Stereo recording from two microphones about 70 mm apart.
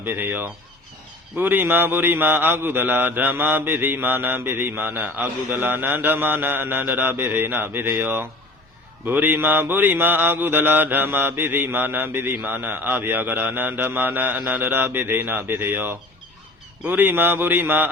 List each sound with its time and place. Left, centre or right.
0.0 s a man's voice: right